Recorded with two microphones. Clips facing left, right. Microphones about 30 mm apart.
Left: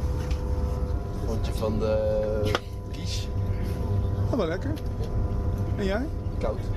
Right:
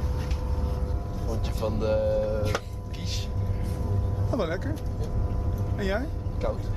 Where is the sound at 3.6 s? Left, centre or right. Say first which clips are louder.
Left 1 dB; left.